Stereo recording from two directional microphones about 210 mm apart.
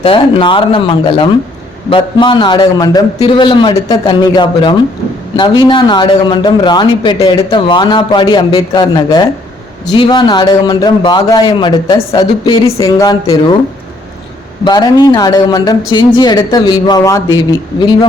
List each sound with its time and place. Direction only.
0.0 s a man's voice: 25° left (ahead or behind)
14.6 s a man's voice: 20° left (ahead or behind)